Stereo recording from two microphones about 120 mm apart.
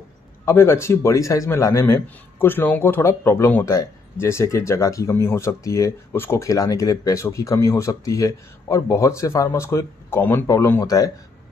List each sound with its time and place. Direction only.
0.5 s speech: 20° left (ahead or behind)